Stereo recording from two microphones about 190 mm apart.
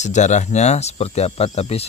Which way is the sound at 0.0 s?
40° left (ahead or behind).